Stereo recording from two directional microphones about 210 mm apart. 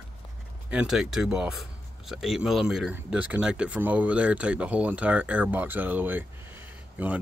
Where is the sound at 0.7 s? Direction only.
5° right (ahead or behind).